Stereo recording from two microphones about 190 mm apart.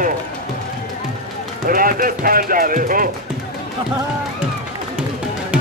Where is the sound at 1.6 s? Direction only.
50° right (ahead or behind).